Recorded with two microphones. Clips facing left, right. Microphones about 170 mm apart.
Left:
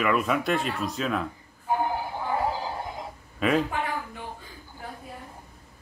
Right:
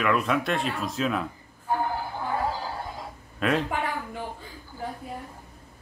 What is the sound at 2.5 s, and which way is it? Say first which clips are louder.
Synthetic singing: left 1 dB; 20° left (ahead or behind).